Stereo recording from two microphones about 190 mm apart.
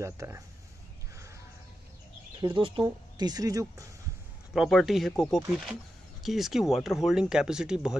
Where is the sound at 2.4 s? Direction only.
25° right (ahead or behind).